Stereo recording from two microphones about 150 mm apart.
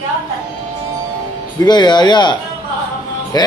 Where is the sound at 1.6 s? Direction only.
30° left (ahead or behind).